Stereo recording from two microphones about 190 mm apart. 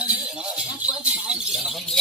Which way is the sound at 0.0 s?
5° right (ahead or behind).